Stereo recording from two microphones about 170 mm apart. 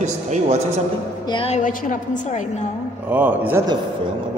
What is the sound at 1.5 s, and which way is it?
A woman's voice, 50° left (ahead or behind).